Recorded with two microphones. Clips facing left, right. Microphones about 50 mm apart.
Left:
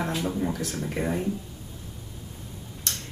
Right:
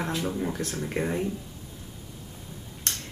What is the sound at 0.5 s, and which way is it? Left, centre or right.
Speech, right.